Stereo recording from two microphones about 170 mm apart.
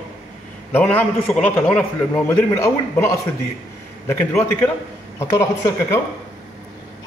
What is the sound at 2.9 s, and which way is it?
A man's voice, 15° left (ahead or behind).